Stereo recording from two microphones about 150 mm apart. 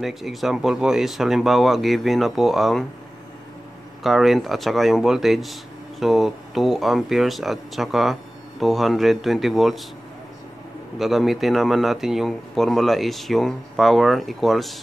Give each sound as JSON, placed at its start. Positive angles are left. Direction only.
{"t": 0.0, "sound": "speech", "side_deg": 0}
{"t": 4.0, "sound": "speech", "side_deg": 0}
{"t": 11.0, "sound": "speech", "side_deg": 0}